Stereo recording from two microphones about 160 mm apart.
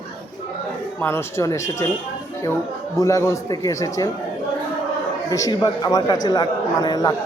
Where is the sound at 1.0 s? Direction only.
15° left (ahead or behind).